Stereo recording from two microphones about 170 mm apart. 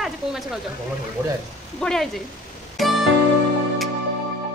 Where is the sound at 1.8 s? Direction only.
5° left (ahead or behind).